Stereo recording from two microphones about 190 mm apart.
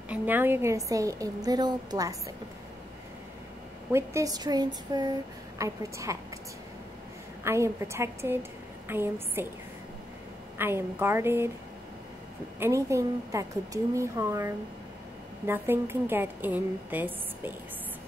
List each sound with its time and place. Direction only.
0.1 s a woman's voice: 10° right (ahead or behind)
3.9 s a woman's voice: 15° right (ahead or behind)
7.4 s a woman's voice: 15° right (ahead or behind)
10.6 s a woman's voice: 10° right (ahead or behind)
12.5 s a woman's voice: 15° right (ahead or behind)